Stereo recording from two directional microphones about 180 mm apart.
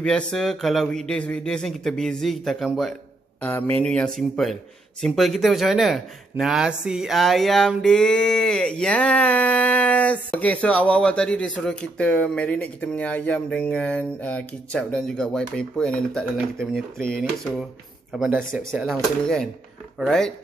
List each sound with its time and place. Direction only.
0.0 s speech: 5° left (ahead or behind)